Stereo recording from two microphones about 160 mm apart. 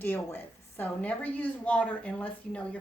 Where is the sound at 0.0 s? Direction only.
10° left (ahead or behind).